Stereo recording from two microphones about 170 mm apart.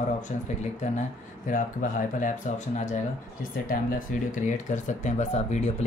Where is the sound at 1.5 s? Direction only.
50° left (ahead or behind).